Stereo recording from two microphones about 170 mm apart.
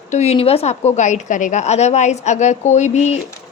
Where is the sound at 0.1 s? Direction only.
40° left (ahead or behind).